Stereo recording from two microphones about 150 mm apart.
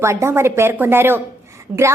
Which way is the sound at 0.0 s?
20° right (ahead or behind).